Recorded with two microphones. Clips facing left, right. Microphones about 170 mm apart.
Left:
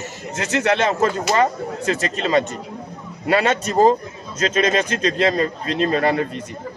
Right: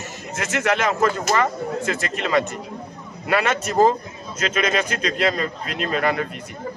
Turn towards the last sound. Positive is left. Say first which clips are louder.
# left 3 dB
turn(degrees=30)  # may be behind; listen again after turning